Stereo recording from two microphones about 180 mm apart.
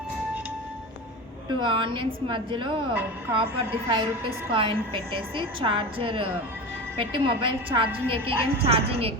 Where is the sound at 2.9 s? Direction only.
10° right (ahead or behind).